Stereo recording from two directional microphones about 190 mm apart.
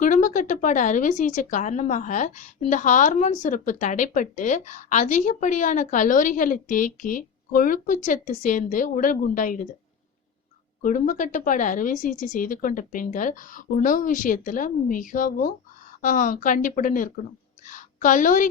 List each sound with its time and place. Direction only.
0.0 s speech: 45° left (ahead or behind)
10.8 s speech: 45° left (ahead or behind)
17.7 s a sound: 45° left (ahead or behind)